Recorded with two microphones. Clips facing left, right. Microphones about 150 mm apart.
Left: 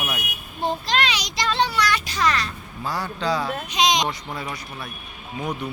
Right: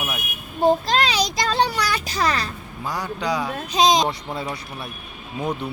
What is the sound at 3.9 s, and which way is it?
Speech, 30° right (ahead or behind).